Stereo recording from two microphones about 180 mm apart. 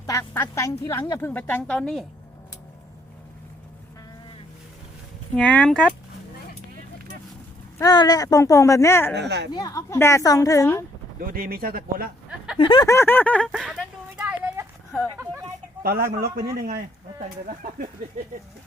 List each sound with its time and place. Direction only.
0.0 s a woman's voice: 15° left (ahead or behind)
5.4 s a woman's voice: 5° left (ahead or behind)
7.8 s a woman's voice: 20° left (ahead or behind)
9.1 s speech: 70° right (ahead or behind)
9.5 s a woman's voice: 20° left (ahead or behind)
11.2 s speech: 55° right (ahead or behind)
12.5 s a woman's voice: 25° left (ahead or behind); by 13.8 s centre (ahead or behind)
14.3 s a sound: 15° right (ahead or behind)
15.8 s a man's voice: 55° right (ahead or behind)